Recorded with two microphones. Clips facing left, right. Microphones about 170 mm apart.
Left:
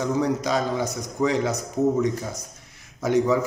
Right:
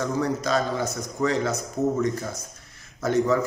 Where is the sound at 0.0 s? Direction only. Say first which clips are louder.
Left 2 dB; 15° left (ahead or behind).